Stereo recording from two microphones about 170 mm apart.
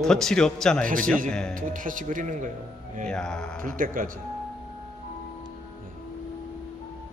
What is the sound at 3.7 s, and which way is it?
Speech, 55° right (ahead or behind).